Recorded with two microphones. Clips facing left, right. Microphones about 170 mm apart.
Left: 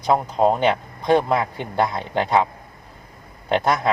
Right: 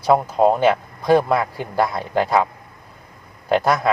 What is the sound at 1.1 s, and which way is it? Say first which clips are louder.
Speech: right 2 dB; 20° left (ahead or behind).